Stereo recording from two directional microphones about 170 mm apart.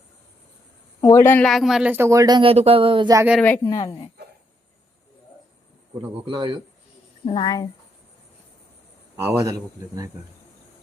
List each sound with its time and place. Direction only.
1.1 s a woman's voice: 15° left (ahead or behind)
1.5 s speech: centre (ahead or behind); by 3.2 s 30° right (ahead or behind)
3.4 s a woman's voice: 15° left (ahead or behind)
6.2 s speech: 30° right (ahead or behind)
7.3 s a woman's voice: 25° left (ahead or behind)
9.1 s speech: 15° right (ahead or behind)